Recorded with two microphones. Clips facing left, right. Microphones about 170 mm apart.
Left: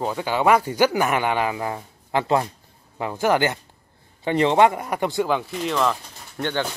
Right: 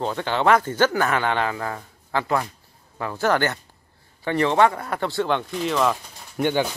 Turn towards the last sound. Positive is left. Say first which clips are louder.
# right 4 dB
turn(degrees=-10)  # may be behind; listen again after turning